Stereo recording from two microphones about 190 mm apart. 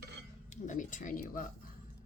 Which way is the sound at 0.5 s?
40° left (ahead or behind).